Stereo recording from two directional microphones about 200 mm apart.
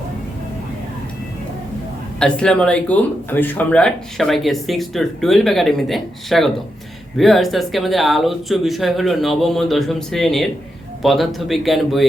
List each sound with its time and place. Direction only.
2.1 s speech: 5° left (ahead or behind)